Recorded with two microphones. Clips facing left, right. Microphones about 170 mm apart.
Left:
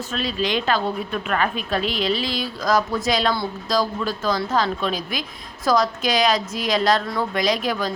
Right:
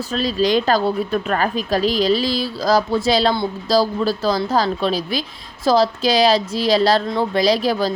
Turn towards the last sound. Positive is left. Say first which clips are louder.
# right 5 dB
turn(degrees=-35)  # may be behind; listen again after turning